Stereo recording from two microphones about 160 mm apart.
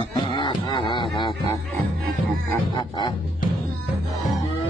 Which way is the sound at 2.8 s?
30° left (ahead or behind).